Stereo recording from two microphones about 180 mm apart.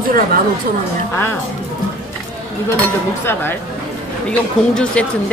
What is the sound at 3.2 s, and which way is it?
Speech, 10° left (ahead or behind).